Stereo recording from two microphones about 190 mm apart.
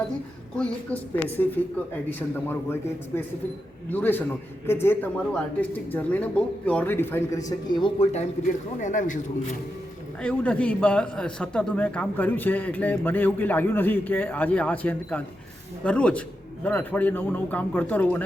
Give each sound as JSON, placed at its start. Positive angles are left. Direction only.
{"t": 0.5, "sound": "a man's voice", "side_deg": 5}
{"t": 3.8, "sound": "a man's voice", "side_deg": 10}
{"t": 8.8, "sound": "a man's voice", "side_deg": 40}
{"t": 10.2, "sound": "a man's voice", "side_deg": 5}